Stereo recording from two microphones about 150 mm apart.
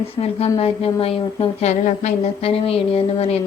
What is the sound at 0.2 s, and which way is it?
A woman's voice, 40° left (ahead or behind).